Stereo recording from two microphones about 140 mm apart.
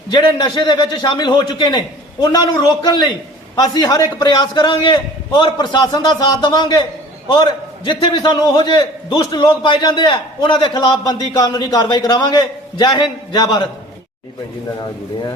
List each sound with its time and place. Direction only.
0.1 s a man's voice: 30° left (ahead or behind)